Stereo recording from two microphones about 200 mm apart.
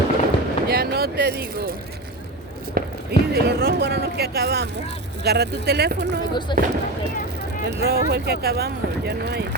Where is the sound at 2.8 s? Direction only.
50° right (ahead or behind).